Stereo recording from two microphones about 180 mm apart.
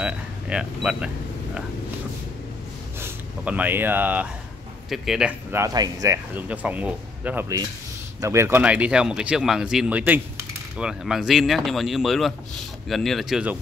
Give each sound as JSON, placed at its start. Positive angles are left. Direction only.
{"t": 0.0, "sound": "a sound", "side_deg": -5}
{"t": 3.0, "sound": "speech", "side_deg": -10}
{"t": 5.5, "sound": "speech", "side_deg": -20}